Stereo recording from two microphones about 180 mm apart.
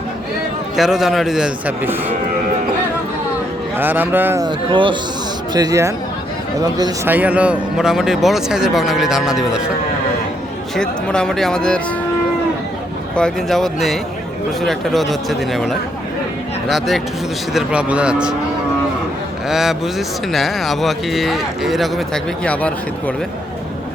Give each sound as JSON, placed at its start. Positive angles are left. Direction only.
{"t": 0.8, "sound": "speech", "side_deg": 0}
{"t": 3.8, "sound": "speech", "side_deg": -10}
{"t": 4.4, "sound": "speech", "side_deg": -25}
{"t": 7.1, "sound": "speech", "side_deg": -10}
{"t": 10.8, "sound": "speech", "side_deg": 5}
{"t": 13.1, "sound": "speech", "side_deg": 5}
{"t": 19.5, "sound": "speech", "side_deg": 0}